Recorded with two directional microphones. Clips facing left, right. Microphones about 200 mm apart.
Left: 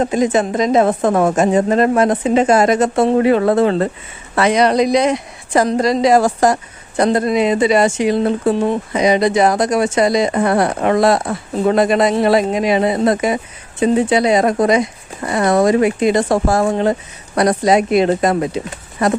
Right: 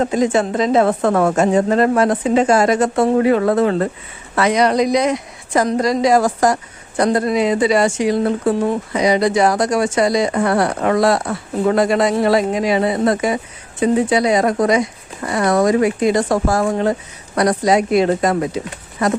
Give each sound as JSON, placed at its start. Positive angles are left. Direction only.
{"t": 0.0, "sound": "a woman's voice", "side_deg": 20}